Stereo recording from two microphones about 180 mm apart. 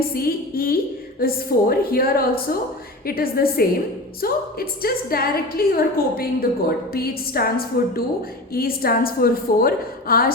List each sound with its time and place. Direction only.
0.0 s a woman's voice: 55° left (ahead or behind)